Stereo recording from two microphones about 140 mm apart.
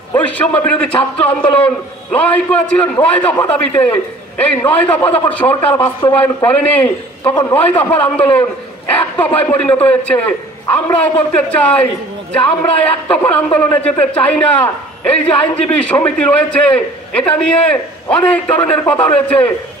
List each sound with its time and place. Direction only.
0.1 s a man's voice: 10° left (ahead or behind)
0.8 s a man's voice: 45° left (ahead or behind)
2.1 s a man's voice: 10° left (ahead or behind)